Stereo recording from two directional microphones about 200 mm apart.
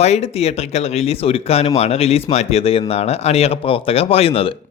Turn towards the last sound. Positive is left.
turn(degrees=30)  # may be behind; listen again after turning